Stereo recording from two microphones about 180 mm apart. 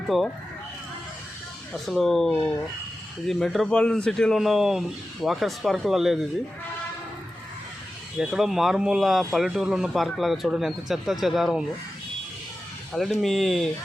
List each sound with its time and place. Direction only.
0.1 s speech: centre (ahead or behind)
1.7 s speech: centre (ahead or behind)
8.2 s speech: centre (ahead or behind)
12.9 s speech: centre (ahead or behind)